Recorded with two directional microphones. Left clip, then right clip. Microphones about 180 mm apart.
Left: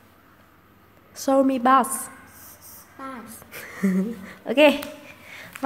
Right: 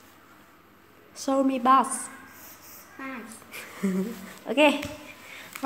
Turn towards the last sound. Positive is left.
turn(degrees=35)  # may be behind; listen again after turning